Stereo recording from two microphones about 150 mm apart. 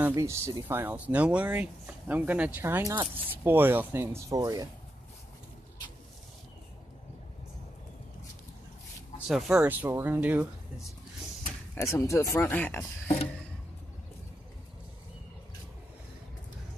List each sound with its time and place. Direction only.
0.0 s speech: 20° right (ahead or behind)
9.3 s speech: 5° right (ahead or behind)
11.7 s speech: 20° left (ahead or behind)